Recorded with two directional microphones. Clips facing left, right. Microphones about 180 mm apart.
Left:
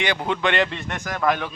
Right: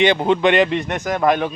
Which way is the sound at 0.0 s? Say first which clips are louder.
Right 8 dB; 25° right (ahead or behind).